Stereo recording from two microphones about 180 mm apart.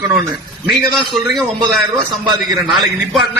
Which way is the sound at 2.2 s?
20° right (ahead or behind).